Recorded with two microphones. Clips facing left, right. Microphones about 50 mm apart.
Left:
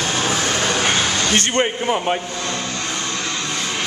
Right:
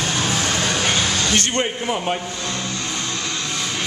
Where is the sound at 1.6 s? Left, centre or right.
Centre.